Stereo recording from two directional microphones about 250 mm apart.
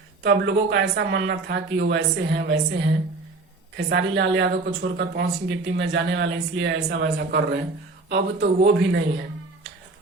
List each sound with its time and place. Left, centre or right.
0.2 s speech: right